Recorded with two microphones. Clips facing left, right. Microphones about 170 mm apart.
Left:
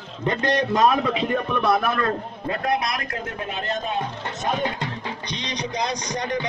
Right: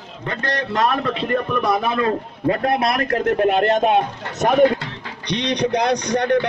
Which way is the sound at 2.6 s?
60° right (ahead or behind).